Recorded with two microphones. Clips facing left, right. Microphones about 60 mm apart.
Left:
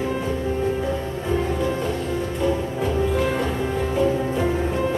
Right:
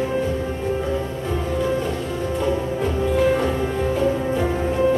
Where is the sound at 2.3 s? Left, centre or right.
Centre.